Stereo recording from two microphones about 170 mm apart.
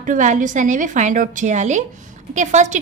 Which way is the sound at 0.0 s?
50° right (ahead or behind).